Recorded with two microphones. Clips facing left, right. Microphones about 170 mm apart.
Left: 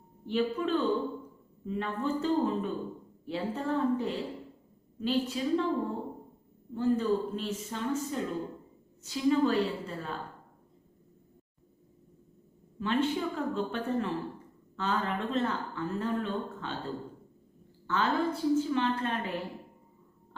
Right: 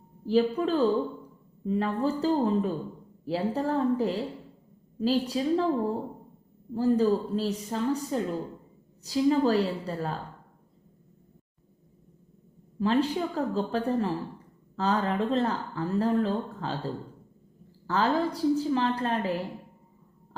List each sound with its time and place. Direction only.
0.3 s a woman's voice: 35° right (ahead or behind)
6.7 s a woman's voice: 35° right (ahead or behind)
12.8 s a woman's voice: 35° right (ahead or behind)
17.8 s a woman's voice: 35° right (ahead or behind)